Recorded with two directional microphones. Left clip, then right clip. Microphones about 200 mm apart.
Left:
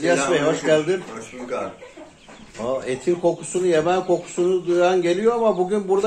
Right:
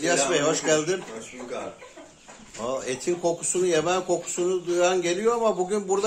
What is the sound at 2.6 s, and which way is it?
Speech, centre (ahead or behind).